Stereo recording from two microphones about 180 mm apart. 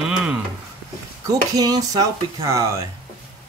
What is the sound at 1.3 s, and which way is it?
Speech, 20° right (ahead or behind).